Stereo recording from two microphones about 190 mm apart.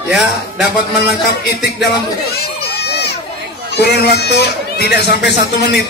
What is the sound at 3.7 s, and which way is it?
Speech, 60° left (ahead or behind).